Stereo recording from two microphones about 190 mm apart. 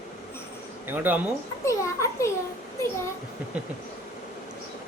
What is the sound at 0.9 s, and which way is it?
Speech, 10° right (ahead or behind).